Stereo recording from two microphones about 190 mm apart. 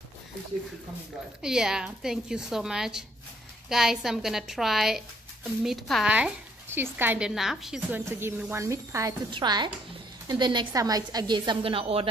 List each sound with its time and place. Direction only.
1.4 s a woman's voice: 5° right (ahead or behind); by 12.1 s 30° right (ahead or behind)